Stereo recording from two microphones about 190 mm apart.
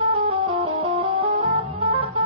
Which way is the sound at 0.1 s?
25° right (ahead or behind).